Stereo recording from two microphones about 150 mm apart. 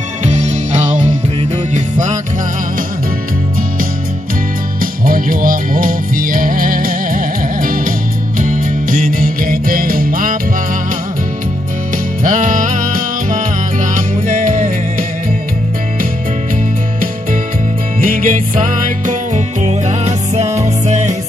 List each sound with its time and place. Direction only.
0.2 s music: 50° right (ahead or behind)
5.0 s music: 70° right (ahead or behind)
12.2 s music: 60° right (ahead or behind)
18.0 s music: 65° right (ahead or behind)